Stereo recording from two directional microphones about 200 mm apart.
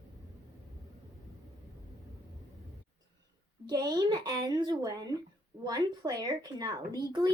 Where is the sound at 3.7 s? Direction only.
20° right (ahead or behind).